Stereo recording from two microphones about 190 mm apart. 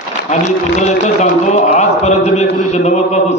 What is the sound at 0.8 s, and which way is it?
A man's voice, 40° left (ahead or behind).